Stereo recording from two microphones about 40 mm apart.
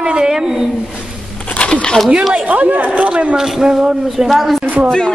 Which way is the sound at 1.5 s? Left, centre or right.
Left.